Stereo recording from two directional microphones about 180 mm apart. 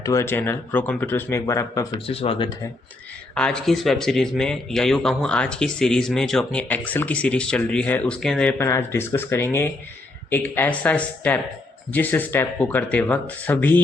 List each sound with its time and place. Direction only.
0.0 s speech: 15° left (ahead or behind)
2.0 s speech: 30° left (ahead or behind)
3.3 s a man's voice: 5° left (ahead or behind)